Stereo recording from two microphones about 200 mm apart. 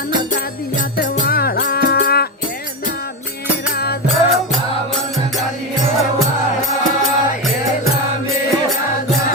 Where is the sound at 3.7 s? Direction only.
50° left (ahead or behind).